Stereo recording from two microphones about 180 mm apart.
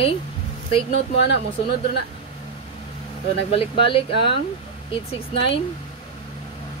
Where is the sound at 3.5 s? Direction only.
30° left (ahead or behind).